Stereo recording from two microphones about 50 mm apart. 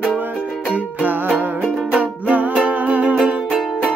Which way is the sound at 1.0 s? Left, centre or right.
Right.